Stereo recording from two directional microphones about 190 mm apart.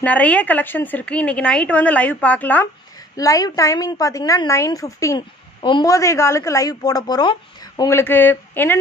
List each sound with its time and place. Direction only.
0.0 s a woman's voice: 5° left (ahead or behind)